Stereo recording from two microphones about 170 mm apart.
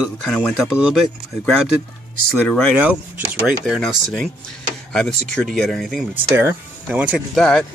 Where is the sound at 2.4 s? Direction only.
5° left (ahead or behind).